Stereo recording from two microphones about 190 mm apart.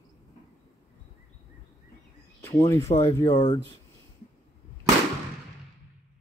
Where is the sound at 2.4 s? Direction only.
15° left (ahead or behind).